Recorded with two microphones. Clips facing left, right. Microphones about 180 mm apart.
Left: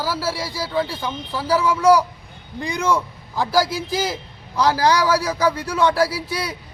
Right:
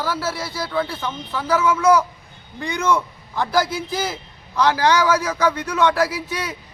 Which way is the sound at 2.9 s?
10° left (ahead or behind).